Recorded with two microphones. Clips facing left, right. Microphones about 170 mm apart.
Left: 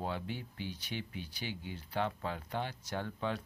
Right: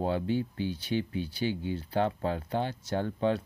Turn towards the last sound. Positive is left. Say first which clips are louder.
# right 9 dB
turn(degrees=-30)  # may be behind; listen again after turning